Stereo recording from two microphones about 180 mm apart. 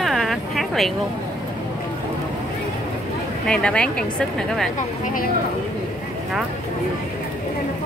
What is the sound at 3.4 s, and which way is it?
Speech, 5° left (ahead or behind).